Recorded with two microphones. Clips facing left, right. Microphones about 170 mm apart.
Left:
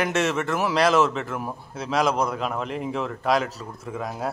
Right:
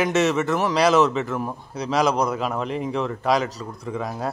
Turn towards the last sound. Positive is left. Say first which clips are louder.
# right 2 dB
turn(degrees=0)  # may be behind; listen again after turning